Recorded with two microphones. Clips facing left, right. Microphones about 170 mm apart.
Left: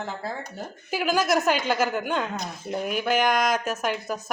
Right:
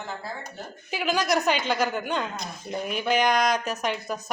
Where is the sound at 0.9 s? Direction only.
5° left (ahead or behind).